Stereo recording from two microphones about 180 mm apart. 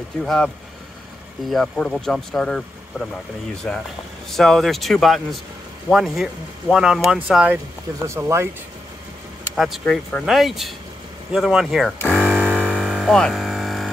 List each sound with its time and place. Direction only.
0.2 s speech: centre (ahead or behind)
1.5 s speech: centre (ahead or behind)
8.1 s speech: 15° right (ahead or behind)
9.6 s speech: centre (ahead or behind)
12.1 s hum: 5° right (ahead or behind)